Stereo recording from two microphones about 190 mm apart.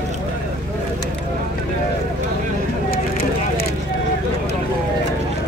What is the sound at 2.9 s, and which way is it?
Vehicle, 50° left (ahead or behind).